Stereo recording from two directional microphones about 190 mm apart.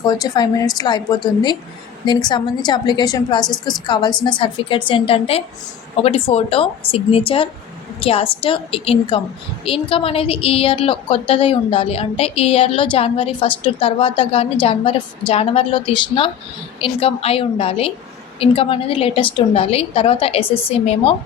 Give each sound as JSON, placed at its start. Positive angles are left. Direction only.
{"t": 0.0, "sound": "a woman's voice", "side_deg": 20}